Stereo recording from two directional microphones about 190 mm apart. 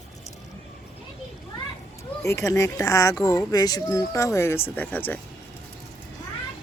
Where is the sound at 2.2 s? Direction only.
15° left (ahead or behind).